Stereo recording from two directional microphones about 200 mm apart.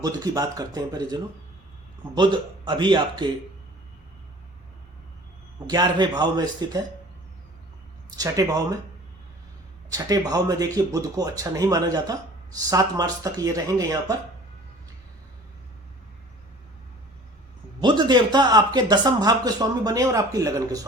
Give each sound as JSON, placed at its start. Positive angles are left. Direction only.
{"t": 0.0, "sound": "speech", "side_deg": -20}
{"t": 5.6, "sound": "speech", "side_deg": -20}
{"t": 8.1, "sound": "speech", "side_deg": -20}
{"t": 9.9, "sound": "speech", "side_deg": -20}
{"t": 17.7, "sound": "speech", "side_deg": -20}